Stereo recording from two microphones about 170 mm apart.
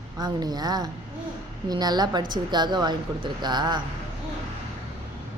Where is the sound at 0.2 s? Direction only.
25° right (ahead or behind).